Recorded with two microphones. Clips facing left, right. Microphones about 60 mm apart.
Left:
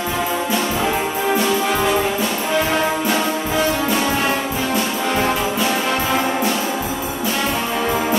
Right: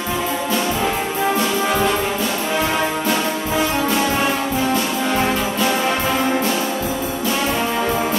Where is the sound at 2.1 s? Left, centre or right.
Centre.